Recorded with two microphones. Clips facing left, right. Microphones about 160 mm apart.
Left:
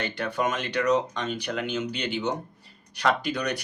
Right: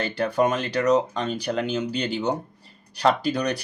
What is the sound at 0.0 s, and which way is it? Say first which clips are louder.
Speech: right 5 dB; 35° right (ahead or behind).